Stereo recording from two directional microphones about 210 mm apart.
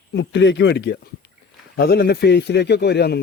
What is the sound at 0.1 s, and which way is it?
A man's voice, 60° left (ahead or behind).